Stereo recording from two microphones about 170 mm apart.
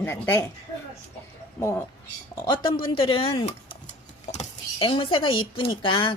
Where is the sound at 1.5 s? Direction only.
15° left (ahead or behind).